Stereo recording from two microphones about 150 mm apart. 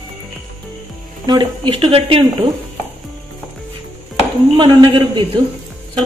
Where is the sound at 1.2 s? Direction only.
35° right (ahead or behind).